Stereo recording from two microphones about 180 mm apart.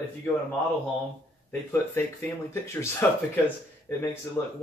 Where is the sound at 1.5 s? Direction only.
10° left (ahead or behind).